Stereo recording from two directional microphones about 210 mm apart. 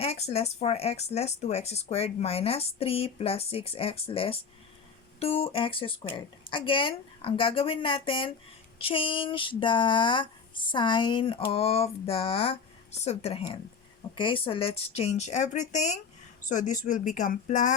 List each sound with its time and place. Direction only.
0.0 s speech: 30° left (ahead or behind)